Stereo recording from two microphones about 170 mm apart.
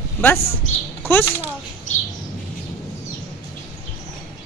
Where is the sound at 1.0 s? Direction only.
10° left (ahead or behind).